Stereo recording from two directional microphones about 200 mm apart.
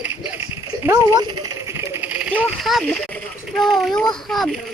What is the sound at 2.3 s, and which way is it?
A child's voice, centre (ahead or behind).